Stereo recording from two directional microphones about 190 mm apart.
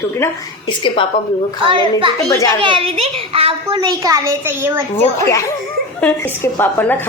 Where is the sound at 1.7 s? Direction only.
25° right (ahead or behind).